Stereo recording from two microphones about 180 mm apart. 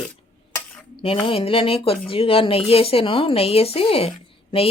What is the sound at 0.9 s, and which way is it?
Speech, 30° left (ahead or behind).